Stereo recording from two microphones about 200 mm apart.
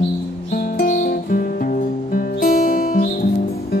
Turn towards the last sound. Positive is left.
turn(degrees=45)  # may be behind; listen again after turning